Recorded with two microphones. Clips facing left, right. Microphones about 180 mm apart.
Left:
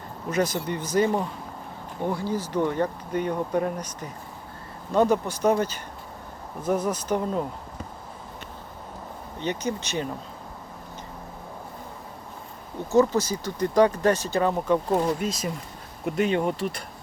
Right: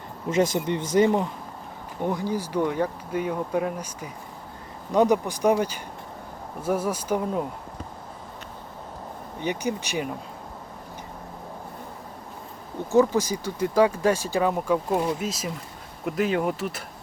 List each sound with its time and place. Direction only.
0.3 s speech: 25° right (ahead or behind); by 7.4 s 10° right (ahead or behind)
9.4 s speech: 15° right (ahead or behind)
12.9 s speech: 15° right (ahead or behind)